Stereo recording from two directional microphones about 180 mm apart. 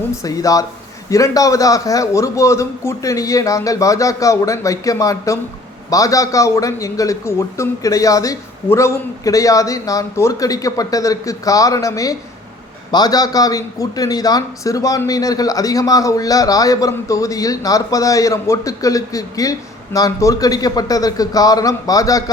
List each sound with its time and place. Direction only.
0.2 s a man's voice: 20° left (ahead or behind)